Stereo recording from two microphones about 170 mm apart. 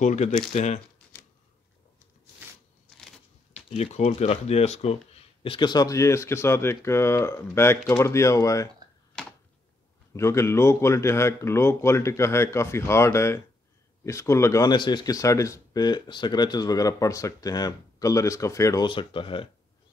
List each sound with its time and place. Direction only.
0.0 s speech: 45° left (ahead or behind)
3.7 s speech: 40° left (ahead or behind); by 8.6 s 20° left (ahead or behind)
9.2 s a sound: 5° left (ahead or behind)
10.1 s speech: 15° left (ahead or behind)
18.9 s speech: 30° left (ahead or behind)